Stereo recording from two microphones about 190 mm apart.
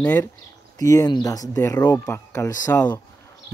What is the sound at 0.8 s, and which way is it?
Speech, 20° left (ahead or behind).